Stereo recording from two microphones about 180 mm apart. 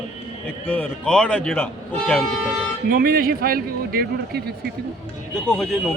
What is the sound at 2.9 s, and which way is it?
A man's voice, 55° right (ahead or behind).